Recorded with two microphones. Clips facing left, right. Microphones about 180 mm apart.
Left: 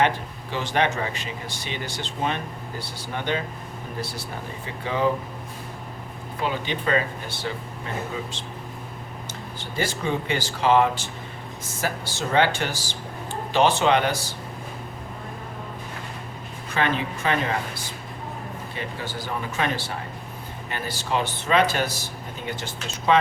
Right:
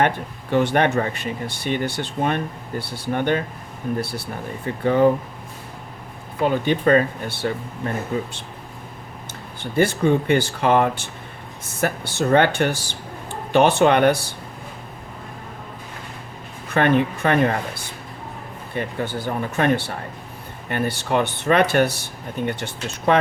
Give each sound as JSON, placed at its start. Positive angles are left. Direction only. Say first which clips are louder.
{"t": 0.5, "sound": "speech", "louder": "right 6 dB", "side_deg": -55}
{"t": 6.4, "sound": "speech", "louder": "right 8 dB", "side_deg": -50}
{"t": 9.6, "sound": "speech", "louder": "right 9 dB", "side_deg": -60}
{"t": 16.7, "sound": "speech", "louder": "right 7 dB", "side_deg": -55}